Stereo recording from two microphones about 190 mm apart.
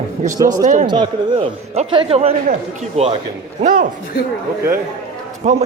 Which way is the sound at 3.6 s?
45° right (ahead or behind).